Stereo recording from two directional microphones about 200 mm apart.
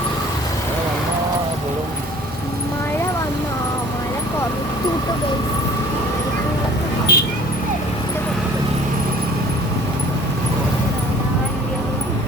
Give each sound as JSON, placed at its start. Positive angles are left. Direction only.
{"t": 7.1, "sound": "vehicle", "side_deg": 55}